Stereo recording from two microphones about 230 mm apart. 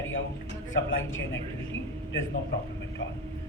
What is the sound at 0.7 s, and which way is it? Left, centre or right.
Speech, left.